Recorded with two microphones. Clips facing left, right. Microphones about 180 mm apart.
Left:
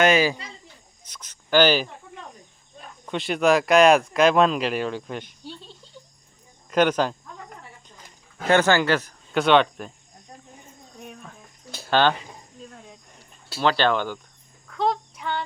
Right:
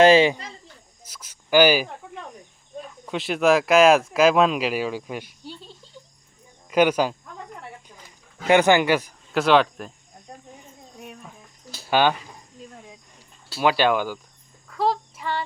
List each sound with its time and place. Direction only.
0.0 s speech: 30° right (ahead or behind)
1.0 s speech: 5° right (ahead or behind)
3.1 s speech: centre (ahead or behind)
8.4 s speech: 15° right (ahead or behind)
9.3 s speech: centre (ahead or behind)
11.0 s a sound: 5° right (ahead or behind)
11.9 s speech: 10° right (ahead or behind)
13.6 s speech: 10° right (ahead or behind)
14.7 s child singing: 5° right (ahead or behind)